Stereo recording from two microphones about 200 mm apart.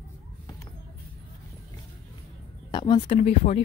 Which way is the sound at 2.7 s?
20° left (ahead or behind).